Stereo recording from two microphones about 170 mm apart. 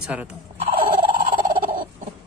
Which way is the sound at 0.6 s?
30° right (ahead or behind).